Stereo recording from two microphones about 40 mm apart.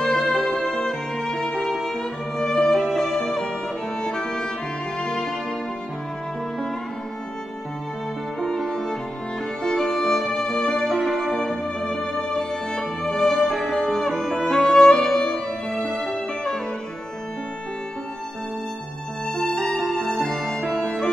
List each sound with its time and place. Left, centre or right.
0.0 s music: centre
8.4 s music: centre
19.5 s music: centre